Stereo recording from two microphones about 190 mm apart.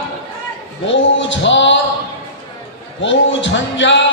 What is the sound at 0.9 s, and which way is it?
Speech, 75° left (ahead or behind).